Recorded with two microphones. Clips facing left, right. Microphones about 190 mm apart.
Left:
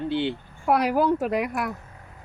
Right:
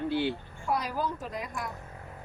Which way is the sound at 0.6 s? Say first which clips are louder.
Left 10 dB; 65° left (ahead or behind).